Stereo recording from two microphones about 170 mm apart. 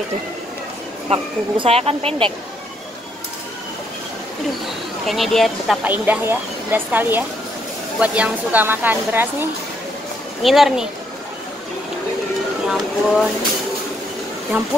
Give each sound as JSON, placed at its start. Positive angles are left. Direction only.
{"t": 1.1, "sound": "speech", "side_deg": -35}
{"t": 5.0, "sound": "speech", "side_deg": 0}
{"t": 5.9, "sound": "speech", "side_deg": -10}
{"t": 10.4, "sound": "speech", "side_deg": 0}
{"t": 12.6, "sound": "speech", "side_deg": -5}